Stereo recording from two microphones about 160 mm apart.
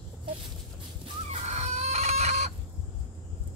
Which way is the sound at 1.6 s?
45° right (ahead or behind).